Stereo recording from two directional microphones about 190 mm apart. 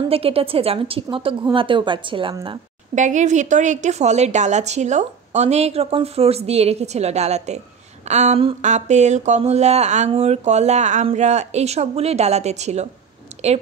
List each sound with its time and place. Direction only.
0.1 s speech: 30° right (ahead or behind)
2.9 s a woman's voice: 40° right (ahead or behind)
13.3 s a sound: 35° right (ahead or behind)